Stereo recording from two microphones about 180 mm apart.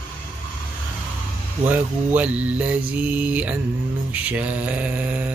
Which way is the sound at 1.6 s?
10° right (ahead or behind).